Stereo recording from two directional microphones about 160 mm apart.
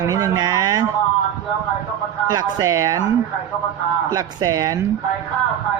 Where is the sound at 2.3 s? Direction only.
20° right (ahead or behind).